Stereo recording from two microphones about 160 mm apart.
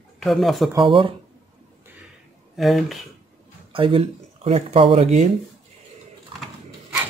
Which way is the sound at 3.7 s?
35° right (ahead or behind).